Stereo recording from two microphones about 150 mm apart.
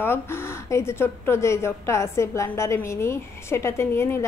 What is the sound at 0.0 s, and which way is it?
A woman's voice, 15° left (ahead or behind).